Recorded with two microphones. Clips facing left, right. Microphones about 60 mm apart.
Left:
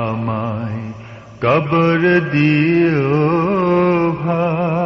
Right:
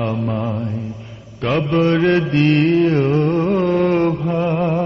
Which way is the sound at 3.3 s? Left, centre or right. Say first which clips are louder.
Left 2 dB; left.